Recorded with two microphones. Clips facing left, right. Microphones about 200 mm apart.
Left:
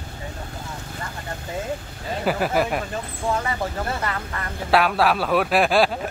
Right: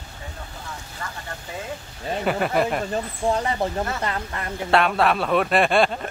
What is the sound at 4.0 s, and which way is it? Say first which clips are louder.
Speech: right 1 dB; 25° right (ahead or behind).